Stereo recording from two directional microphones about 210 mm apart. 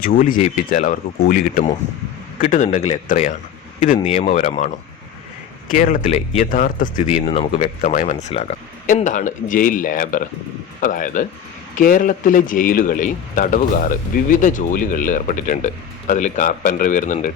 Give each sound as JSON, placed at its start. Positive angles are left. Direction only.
{"t": 0.0, "sound": "a man's voice", "side_deg": 40}